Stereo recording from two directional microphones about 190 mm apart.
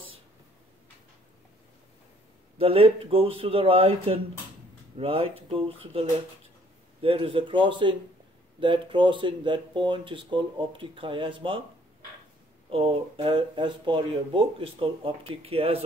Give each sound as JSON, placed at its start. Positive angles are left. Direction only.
{"t": 2.5, "sound": "speech", "side_deg": -30}
{"t": 7.0, "sound": "speech", "side_deg": -30}
{"t": 12.6, "sound": "speech", "side_deg": -30}